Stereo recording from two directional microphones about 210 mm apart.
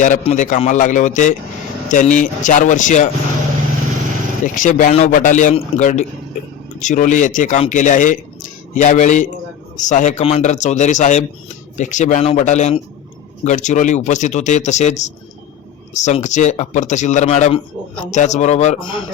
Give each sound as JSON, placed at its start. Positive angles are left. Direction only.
{"t": 0.0, "sound": "speech", "side_deg": 35}
{"t": 4.4, "sound": "a man's voice", "side_deg": 40}